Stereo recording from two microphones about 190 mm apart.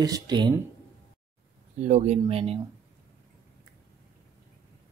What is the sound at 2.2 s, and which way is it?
Mantra, 30° right (ahead or behind).